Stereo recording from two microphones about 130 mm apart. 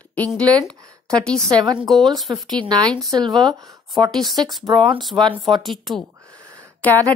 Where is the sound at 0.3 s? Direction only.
5° left (ahead or behind).